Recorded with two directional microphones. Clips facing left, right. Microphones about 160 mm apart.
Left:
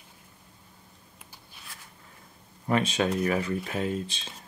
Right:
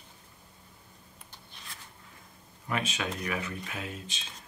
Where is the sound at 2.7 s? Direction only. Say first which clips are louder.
Left 8 dB; 35° left (ahead or behind).